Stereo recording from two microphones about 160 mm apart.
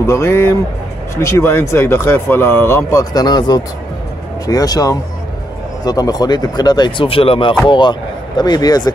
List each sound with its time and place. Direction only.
0.0 s speech: 15° left (ahead or behind)